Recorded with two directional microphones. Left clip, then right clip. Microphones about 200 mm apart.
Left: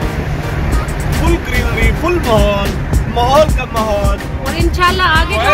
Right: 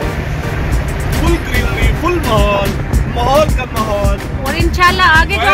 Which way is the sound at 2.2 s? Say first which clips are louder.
Even; centre (ahead or behind).